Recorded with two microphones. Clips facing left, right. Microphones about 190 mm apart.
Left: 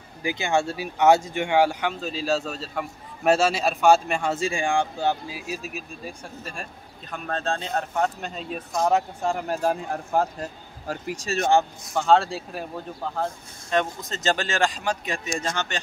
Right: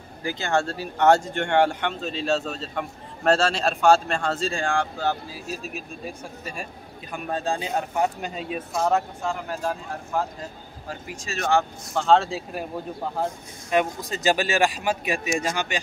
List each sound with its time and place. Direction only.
0.2 s speech: 10° left (ahead or behind); by 8.8 s 5° right (ahead or behind)
9.3 s speech: 45° left (ahead or behind)
10.9 s speech: 35° left (ahead or behind)
11.9 s speech: 5° left (ahead or behind); by 15.8 s 10° right (ahead or behind)